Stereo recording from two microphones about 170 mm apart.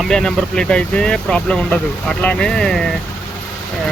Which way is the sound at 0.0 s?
5° left (ahead or behind).